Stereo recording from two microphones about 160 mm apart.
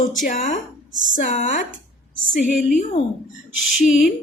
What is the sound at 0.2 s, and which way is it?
Speech, 60° left (ahead or behind).